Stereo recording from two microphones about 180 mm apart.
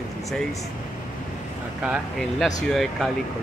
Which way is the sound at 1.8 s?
5° right (ahead or behind).